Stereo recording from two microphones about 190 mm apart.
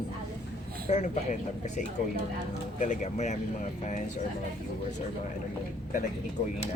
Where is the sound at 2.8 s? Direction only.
40° left (ahead or behind).